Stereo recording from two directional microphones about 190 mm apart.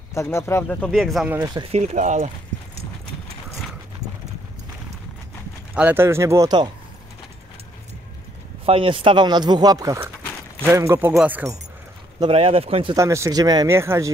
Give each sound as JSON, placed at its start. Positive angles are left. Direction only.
{"t": 0.1, "sound": "speech", "side_deg": 15}
{"t": 1.3, "sound": "speech", "side_deg": -15}
{"t": 1.6, "sound": "speech", "side_deg": -35}
{"t": 5.8, "sound": "speech", "side_deg": -10}
{"t": 8.6, "sound": "speech", "side_deg": -30}
{"t": 12.2, "sound": "speech", "side_deg": -30}
{"t": 12.9, "sound": "speech", "side_deg": -15}